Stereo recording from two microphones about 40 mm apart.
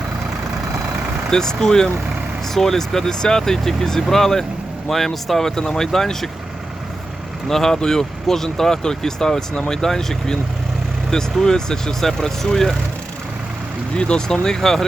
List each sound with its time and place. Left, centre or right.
1.3 s speech: centre
7.5 s speech: centre
13.9 s speech: left